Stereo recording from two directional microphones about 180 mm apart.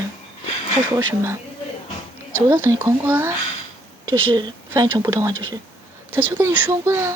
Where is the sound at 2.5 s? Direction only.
15° right (ahead or behind).